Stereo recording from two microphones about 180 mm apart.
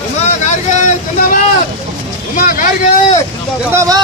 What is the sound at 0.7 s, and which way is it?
Speech, 40° left (ahead or behind).